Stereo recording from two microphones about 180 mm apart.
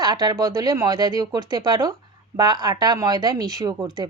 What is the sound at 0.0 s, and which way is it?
Speech, 20° right (ahead or behind).